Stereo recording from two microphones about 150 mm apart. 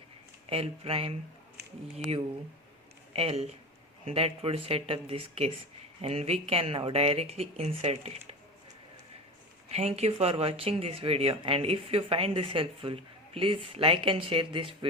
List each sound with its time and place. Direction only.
0.5 s speech: 40° right (ahead or behind)
3.1 s speech: 40° right (ahead or behind)
9.6 s speech: 45° right (ahead or behind)